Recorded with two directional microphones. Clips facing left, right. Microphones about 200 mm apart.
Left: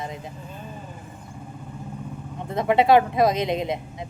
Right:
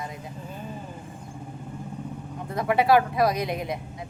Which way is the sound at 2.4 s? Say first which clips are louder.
Left 3 dB; 25° left (ahead or behind).